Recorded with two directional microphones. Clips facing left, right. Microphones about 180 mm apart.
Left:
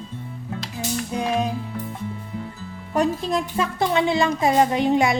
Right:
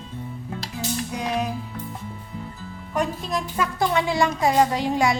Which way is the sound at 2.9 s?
30° left (ahead or behind).